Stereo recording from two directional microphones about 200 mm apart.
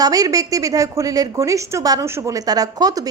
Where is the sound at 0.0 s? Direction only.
20° right (ahead or behind).